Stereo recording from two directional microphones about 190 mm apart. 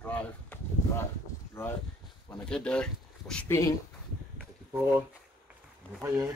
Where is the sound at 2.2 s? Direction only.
5° left (ahead or behind).